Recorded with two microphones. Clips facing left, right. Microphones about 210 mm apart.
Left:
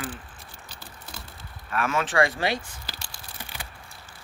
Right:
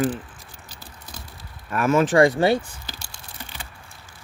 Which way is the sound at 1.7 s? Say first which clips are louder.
Right 7 dB; 40° right (ahead or behind).